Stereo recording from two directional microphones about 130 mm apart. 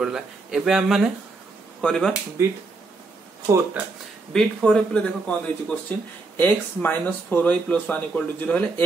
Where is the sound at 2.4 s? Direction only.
20° right (ahead or behind).